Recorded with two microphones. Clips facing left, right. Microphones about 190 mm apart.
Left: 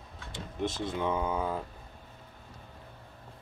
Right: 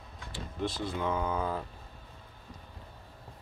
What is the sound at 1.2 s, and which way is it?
Speech, 10° left (ahead or behind).